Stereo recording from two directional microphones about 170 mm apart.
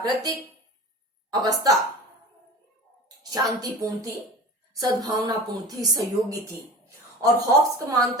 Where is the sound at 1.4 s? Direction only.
20° right (ahead or behind).